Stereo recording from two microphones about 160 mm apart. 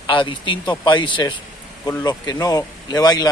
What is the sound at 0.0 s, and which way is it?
A man's voice, 30° left (ahead or behind).